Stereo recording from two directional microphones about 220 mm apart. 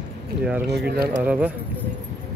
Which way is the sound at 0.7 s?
45° right (ahead or behind).